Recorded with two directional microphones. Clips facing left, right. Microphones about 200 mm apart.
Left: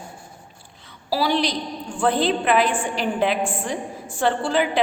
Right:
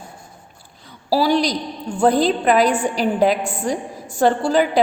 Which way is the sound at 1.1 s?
40° right (ahead or behind).